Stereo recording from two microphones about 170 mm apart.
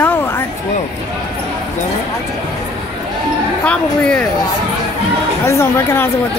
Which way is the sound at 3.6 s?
5° left (ahead or behind).